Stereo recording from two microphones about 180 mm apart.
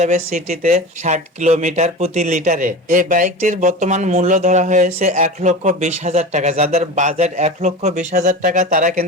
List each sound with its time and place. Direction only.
0.0 s speech: 50° right (ahead or behind)